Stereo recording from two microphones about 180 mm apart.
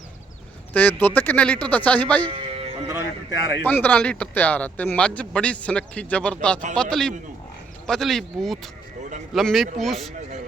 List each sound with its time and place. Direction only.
0.7 s speech: 10° left (ahead or behind)
2.2 s music: 30° right (ahead or behind)
2.8 s speech: 20° right (ahead or behind)
3.6 s speech: 10° left (ahead or behind)